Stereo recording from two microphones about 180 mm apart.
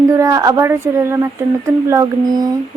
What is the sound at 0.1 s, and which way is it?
Speech, 15° right (ahead or behind).